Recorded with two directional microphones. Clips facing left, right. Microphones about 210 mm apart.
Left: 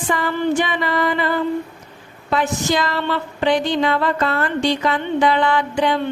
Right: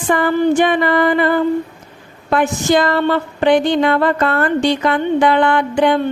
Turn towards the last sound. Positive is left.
turn(degrees=-55)  # may be behind; listen again after turning